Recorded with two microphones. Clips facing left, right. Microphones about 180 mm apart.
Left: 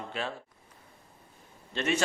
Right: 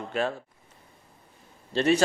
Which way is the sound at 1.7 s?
35° right (ahead or behind).